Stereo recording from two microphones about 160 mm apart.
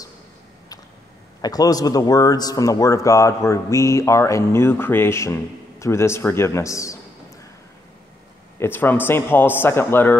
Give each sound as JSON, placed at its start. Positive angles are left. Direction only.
{"t": 1.4, "sound": "a man's voice", "side_deg": 25}
{"t": 8.5, "sound": "a man's voice", "side_deg": 15}